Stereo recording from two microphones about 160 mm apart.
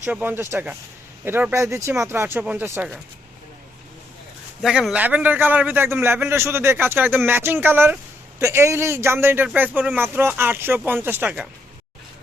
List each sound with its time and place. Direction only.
0.0 s a man's voice: 10° right (ahead or behind)
4.6 s a man's voice: 5° right (ahead or behind)